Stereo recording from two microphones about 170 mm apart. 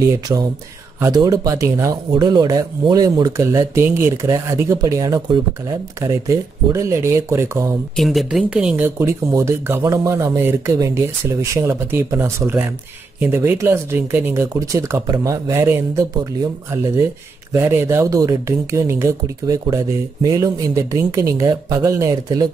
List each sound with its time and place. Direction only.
0.0 s speech: 20° right (ahead or behind)
7.9 s speech: centre (ahead or behind); by 22.5 s 20° right (ahead or behind)